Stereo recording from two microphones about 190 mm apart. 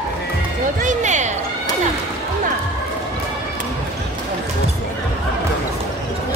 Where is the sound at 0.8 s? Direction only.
40° right (ahead or behind).